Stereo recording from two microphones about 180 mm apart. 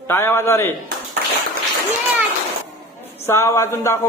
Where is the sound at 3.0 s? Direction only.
15° left (ahead or behind).